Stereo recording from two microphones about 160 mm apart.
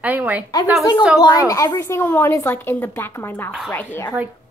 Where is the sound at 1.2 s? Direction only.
20° left (ahead or behind).